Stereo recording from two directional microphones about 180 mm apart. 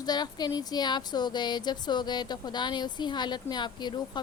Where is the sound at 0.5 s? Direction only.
20° left (ahead or behind).